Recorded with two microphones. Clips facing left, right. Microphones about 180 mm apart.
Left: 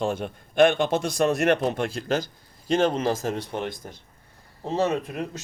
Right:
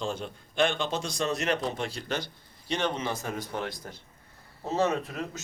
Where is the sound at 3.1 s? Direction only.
90° left.